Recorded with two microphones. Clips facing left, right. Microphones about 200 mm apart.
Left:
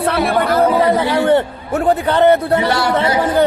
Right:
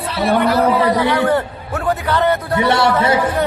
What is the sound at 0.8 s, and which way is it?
A man's voice, 25° left (ahead or behind).